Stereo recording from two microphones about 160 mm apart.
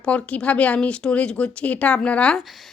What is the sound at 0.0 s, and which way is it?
Speech, 10° left (ahead or behind).